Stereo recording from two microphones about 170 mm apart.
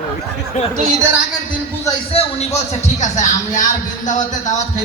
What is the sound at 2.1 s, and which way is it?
Speech, 40° left (ahead or behind).